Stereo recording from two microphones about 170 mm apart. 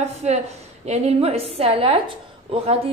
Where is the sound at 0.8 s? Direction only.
40° right (ahead or behind).